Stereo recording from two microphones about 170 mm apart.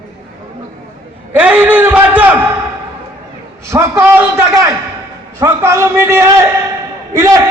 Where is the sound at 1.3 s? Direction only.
10° right (ahead or behind).